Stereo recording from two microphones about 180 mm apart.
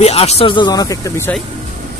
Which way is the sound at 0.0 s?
35° left (ahead or behind).